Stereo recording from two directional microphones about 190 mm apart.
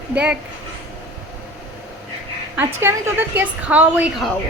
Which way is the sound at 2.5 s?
10° right (ahead or behind).